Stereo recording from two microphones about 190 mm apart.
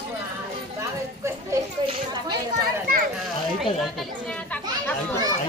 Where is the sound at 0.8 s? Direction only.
15° right (ahead or behind).